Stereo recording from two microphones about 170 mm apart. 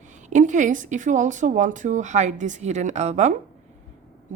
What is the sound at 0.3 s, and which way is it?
Speech, 45° right (ahead or behind).